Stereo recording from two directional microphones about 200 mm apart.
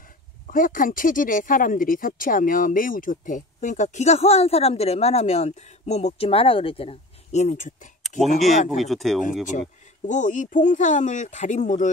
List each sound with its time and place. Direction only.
0.5 s speech: 45° left (ahead or behind)
8.6 s speech: centre (ahead or behind)
10.0 s speech: 40° left (ahead or behind)